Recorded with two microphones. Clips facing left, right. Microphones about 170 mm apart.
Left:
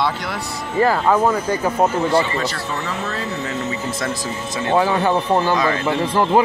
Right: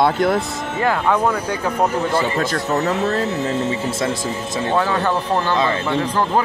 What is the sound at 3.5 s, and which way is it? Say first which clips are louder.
Speech: right 3 dB; 30° right (ahead or behind).